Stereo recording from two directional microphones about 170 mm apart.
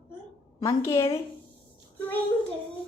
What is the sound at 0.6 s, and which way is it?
Speech, 15° left (ahead or behind).